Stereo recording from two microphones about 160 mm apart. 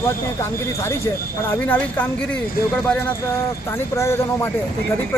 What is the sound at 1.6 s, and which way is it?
Speech, 10° left (ahead or behind).